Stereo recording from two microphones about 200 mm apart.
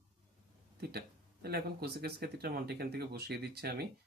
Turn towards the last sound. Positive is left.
turn(degrees=-50)  # may be behind; listen again after turning